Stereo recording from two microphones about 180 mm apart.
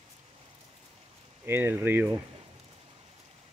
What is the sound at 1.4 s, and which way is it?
Speech, 10° right (ahead or behind).